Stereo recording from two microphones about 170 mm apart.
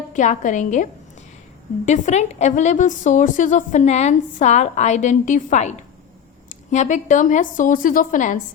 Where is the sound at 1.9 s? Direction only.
45° left (ahead or behind).